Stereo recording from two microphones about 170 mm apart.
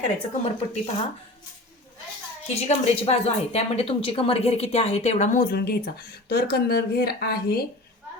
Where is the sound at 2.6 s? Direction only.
40° left (ahead or behind); by 7.6 s 65° left (ahead or behind).